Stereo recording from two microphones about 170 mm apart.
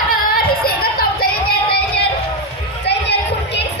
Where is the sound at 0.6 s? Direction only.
60° left (ahead or behind).